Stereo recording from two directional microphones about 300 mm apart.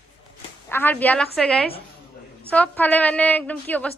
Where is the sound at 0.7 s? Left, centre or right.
Centre.